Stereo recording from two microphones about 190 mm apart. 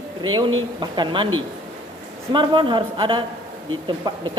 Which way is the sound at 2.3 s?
25° right (ahead or behind).